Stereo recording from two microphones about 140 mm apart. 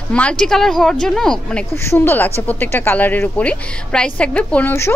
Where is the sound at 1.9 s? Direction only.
15° left (ahead or behind).